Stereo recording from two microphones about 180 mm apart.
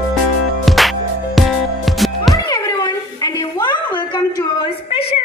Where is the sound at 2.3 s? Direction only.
20° left (ahead or behind).